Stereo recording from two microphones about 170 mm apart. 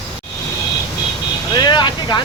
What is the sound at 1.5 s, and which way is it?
Vehicle, 25° left (ahead or behind).